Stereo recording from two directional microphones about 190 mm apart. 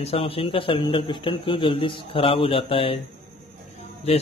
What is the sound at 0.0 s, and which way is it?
A man's voice, 30° left (ahead or behind).